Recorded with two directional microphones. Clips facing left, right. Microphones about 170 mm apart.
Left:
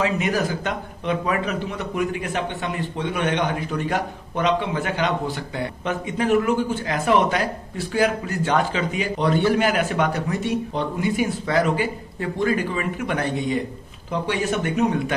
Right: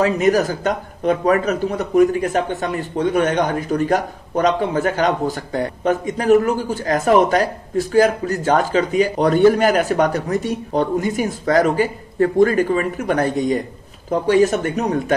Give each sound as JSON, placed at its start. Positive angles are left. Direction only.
{"t": 0.0, "sound": "a man's voice", "side_deg": -40}